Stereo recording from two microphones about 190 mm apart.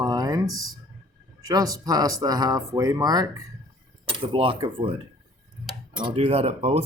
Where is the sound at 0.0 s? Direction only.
20° right (ahead or behind).